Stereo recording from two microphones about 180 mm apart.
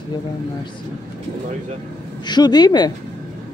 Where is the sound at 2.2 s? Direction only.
25° left (ahead or behind).